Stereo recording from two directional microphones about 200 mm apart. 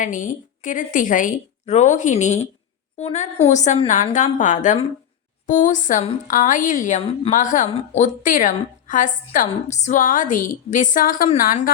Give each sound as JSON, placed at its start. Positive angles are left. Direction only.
{"t": 0.0, "sound": "a woman's voice", "side_deg": 40}